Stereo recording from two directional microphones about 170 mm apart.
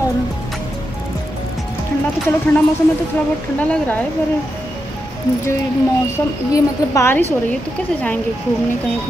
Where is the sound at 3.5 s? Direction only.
10° left (ahead or behind).